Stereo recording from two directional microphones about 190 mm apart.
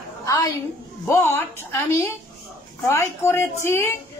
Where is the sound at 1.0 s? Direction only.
15° left (ahead or behind).